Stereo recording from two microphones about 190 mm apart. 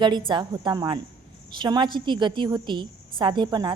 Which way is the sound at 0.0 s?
25° right (ahead or behind).